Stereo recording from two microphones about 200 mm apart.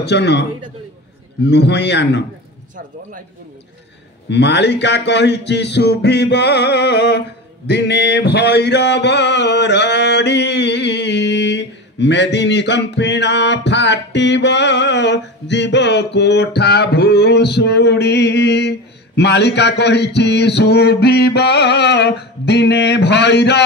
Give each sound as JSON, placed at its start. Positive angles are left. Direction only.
{"t": 0.0, "sound": "speech", "side_deg": 60}
{"t": 4.3, "sound": "speech", "side_deg": 60}